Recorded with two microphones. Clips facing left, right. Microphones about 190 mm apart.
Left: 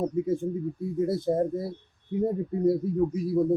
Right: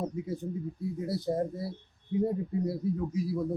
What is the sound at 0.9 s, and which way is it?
Speech, 50° left (ahead or behind).